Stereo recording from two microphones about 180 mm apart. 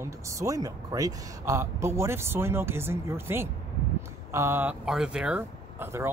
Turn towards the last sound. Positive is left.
turn(degrees=-10)  # may be behind; listen again after turning